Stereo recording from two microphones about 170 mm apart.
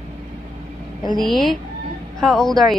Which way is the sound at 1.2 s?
Centre (ahead or behind).